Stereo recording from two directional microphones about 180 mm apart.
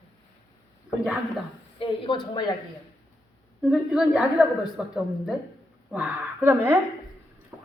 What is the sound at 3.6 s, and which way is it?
A woman's voice, 5° right (ahead or behind).